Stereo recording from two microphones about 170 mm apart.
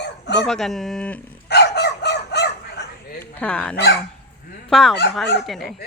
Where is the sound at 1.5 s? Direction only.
75° left (ahead or behind).